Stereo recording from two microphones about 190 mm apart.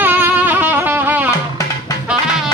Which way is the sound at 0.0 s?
10° right (ahead or behind).